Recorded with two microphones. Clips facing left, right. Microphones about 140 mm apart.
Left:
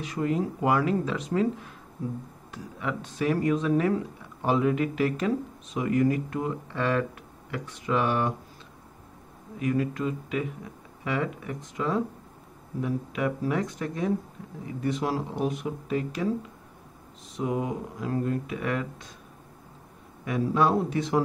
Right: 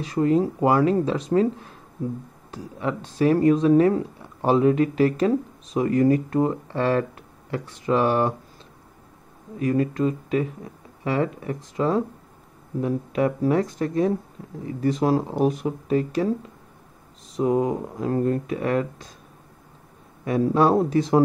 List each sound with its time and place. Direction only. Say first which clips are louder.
0.0 s speech: right 7 dB; 35° right (ahead or behind)
9.6 s speech: right 5 dB; 35° right (ahead or behind)
17.4 s speech: right 7 dB; 35° right (ahead or behind)
20.2 s speech: right 5 dB; 35° right (ahead or behind)